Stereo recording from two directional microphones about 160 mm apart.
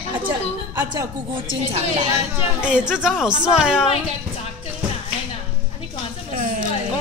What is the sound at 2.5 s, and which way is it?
A woman's voice, 5° right (ahead or behind).